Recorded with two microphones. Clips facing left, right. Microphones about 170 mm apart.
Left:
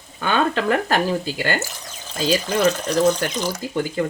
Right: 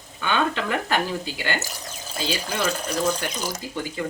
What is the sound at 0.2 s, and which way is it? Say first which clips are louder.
Speech: left 4 dB; 45° left (ahead or behind).